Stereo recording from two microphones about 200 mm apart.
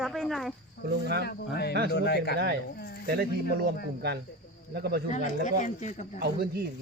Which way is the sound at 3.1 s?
45° right (ahead or behind).